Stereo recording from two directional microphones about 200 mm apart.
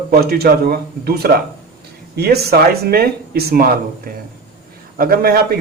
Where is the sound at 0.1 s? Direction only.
50° right (ahead or behind).